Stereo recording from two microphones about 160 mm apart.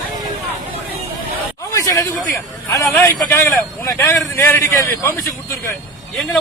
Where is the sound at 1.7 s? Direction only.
20° left (ahead or behind).